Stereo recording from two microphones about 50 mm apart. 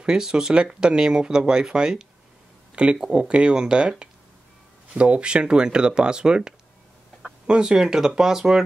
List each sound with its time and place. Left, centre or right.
0.0 s speech: centre
4.9 s speech: right